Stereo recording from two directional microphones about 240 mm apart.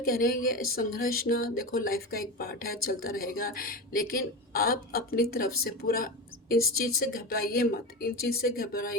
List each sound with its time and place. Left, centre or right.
0.0 s speech: left